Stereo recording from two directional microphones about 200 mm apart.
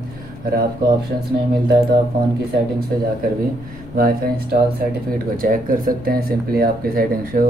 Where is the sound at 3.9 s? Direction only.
45° right (ahead or behind).